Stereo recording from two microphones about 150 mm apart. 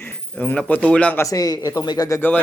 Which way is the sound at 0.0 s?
10° left (ahead or behind).